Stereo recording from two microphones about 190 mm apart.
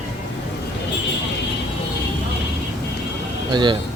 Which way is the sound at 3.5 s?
25° right (ahead or behind).